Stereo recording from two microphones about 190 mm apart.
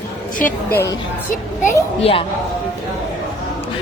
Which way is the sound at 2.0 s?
30° left (ahead or behind).